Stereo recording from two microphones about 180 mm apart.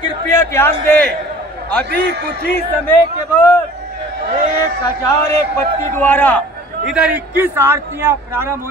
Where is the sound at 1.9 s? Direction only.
65° right (ahead or behind).